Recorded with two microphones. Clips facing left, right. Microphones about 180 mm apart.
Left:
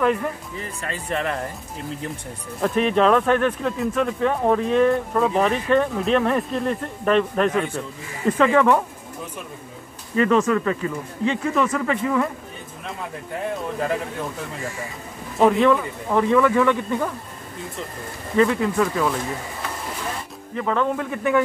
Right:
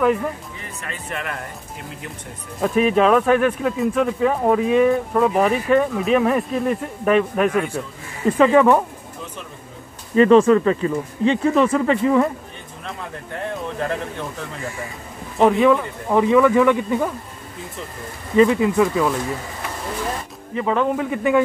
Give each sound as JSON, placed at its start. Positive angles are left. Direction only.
{"t": 0.8, "sound": "speech", "side_deg": 30}
{"t": 2.6, "sound": "speech", "side_deg": -5}
{"t": 10.1, "sound": "speech", "side_deg": -30}
{"t": 13.4, "sound": "speech", "side_deg": 5}
{"t": 15.3, "sound": "speech", "side_deg": -5}
{"t": 18.3, "sound": "speech", "side_deg": -15}
{"t": 20.5, "sound": "speech", "side_deg": -10}